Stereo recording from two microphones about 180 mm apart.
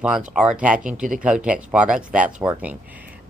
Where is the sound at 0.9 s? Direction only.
50° right (ahead or behind).